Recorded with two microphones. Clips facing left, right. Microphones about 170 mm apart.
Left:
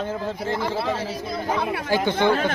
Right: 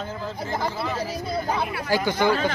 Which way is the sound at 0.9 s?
90° left.